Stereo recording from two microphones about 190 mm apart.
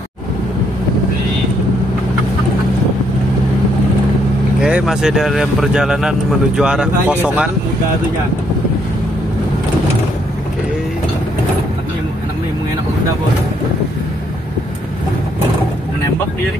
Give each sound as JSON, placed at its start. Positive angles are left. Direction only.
{"t": 4.6, "sound": "speech", "side_deg": -5}